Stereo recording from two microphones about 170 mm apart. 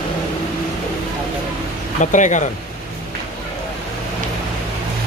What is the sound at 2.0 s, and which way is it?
Speech, 45° left (ahead or behind).